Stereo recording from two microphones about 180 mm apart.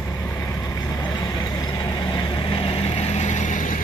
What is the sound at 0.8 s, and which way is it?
Vehicle, 20° left (ahead or behind).